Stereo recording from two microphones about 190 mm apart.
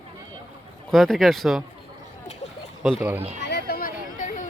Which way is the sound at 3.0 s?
10° right (ahead or behind).